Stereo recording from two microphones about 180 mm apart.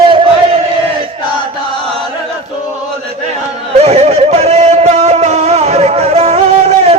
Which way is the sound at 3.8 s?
35° right (ahead or behind).